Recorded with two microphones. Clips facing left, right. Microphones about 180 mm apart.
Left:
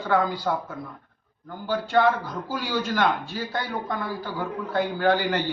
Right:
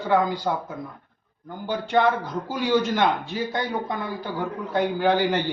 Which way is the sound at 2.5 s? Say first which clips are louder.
Right 6 dB; 20° right (ahead or behind).